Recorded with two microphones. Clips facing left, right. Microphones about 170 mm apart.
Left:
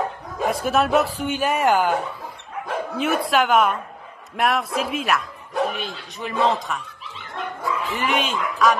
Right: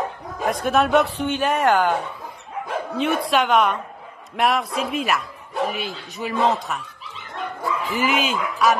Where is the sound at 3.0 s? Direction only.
Centre (ahead or behind).